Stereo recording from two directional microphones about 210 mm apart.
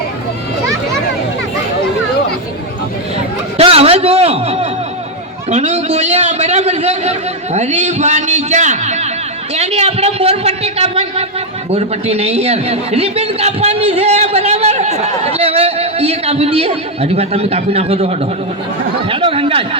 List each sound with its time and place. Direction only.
3.6 s a man's voice: 25° right (ahead or behind)